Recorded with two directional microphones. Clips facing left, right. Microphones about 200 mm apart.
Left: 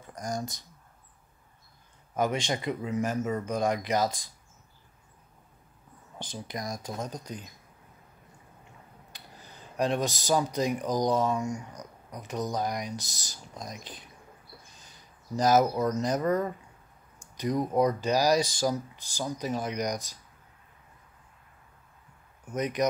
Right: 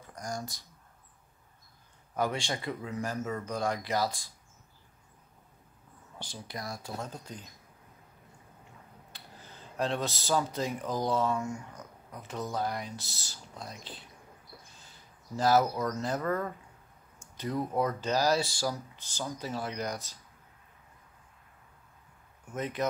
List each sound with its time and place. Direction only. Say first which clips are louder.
0.0 s speech: left 4 dB; 20° left (ahead or behind)
2.1 s speech: left 3 dB; 20° left (ahead or behind)
6.1 s speech: left 4 dB; 20° left (ahead or behind)
9.1 s speech: left 1 dB; 15° left (ahead or behind)
22.5 s speech: left 5 dB; 15° left (ahead or behind)